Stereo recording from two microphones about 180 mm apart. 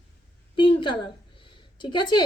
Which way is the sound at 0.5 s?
25° left (ahead or behind).